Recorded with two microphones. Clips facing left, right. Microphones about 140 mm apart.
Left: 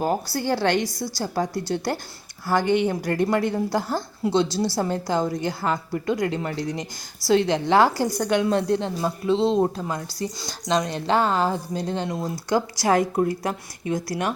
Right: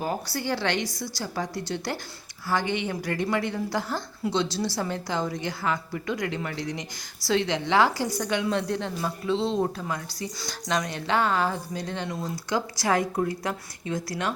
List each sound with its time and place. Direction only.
0.0 s a woman's voice: 40° left (ahead or behind)
12.9 s a woman's voice: 25° left (ahead or behind)